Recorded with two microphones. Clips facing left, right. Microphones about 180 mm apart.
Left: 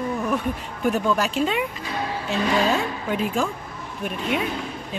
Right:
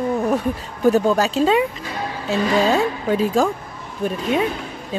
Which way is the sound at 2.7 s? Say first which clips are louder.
Right 5 dB; 35° right (ahead or behind).